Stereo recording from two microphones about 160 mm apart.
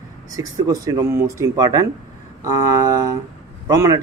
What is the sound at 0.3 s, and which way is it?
Speech, 20° right (ahead or behind).